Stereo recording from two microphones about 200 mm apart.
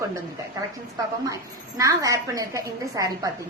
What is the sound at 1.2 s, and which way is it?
A woman's voice, 15° right (ahead or behind).